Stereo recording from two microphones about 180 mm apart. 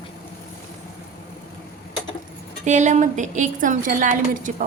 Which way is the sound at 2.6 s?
40° right (ahead or behind).